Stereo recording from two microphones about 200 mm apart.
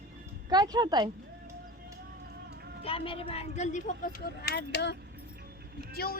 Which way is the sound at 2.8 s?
25° left (ahead or behind).